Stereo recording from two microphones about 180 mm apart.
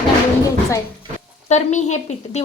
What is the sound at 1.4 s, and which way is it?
Speech, 40° left (ahead or behind).